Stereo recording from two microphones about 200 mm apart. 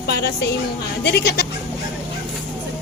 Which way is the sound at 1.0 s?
55° left (ahead or behind).